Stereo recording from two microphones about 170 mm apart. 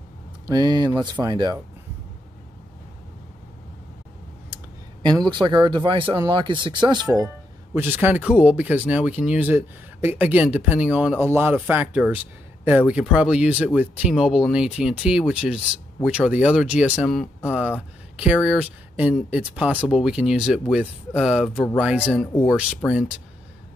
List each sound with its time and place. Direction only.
0.5 s speech: 25° right (ahead or behind)
5.0 s speech: 25° right (ahead or behind)
7.7 s speech: 10° right (ahead or behind)
22.1 s speech: 10° left (ahead or behind)